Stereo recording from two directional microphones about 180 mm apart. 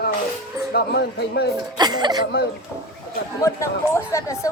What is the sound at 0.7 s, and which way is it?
Speech, 65° left (ahead or behind).